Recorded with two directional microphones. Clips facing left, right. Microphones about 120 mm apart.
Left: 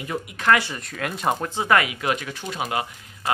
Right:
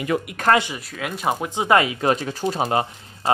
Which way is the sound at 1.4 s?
20° right (ahead or behind).